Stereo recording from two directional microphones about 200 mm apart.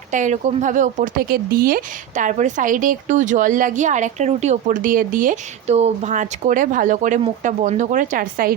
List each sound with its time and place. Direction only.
0.1 s speech: 40° right (ahead or behind)